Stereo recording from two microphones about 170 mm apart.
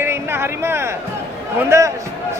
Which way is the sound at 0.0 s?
15° right (ahead or behind).